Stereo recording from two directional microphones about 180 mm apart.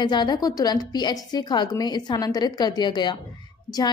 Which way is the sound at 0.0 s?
25° left (ahead or behind).